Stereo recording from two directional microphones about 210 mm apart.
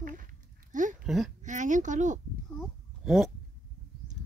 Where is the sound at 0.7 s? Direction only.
35° right (ahead or behind).